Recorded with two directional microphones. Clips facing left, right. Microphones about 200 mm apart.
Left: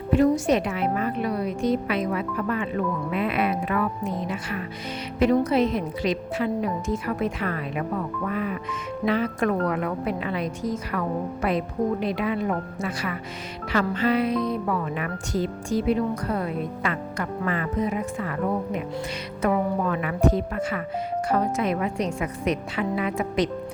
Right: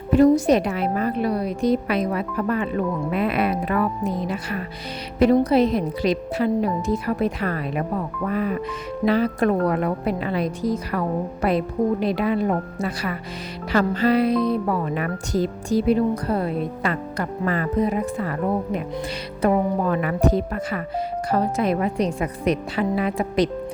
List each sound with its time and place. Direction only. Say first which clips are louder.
0.2 s speech: right 6 dB; 40° right (ahead or behind)
8.3 s music: right 6 dB; 40° right (ahead or behind)
9.0 s speech: right 4 dB; 35° right (ahead or behind)